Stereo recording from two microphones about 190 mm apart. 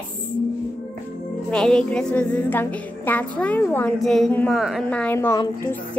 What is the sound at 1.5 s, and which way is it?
A woman's voice, 5° left (ahead or behind).